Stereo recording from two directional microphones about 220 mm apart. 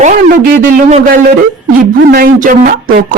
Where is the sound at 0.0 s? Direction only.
40° right (ahead or behind).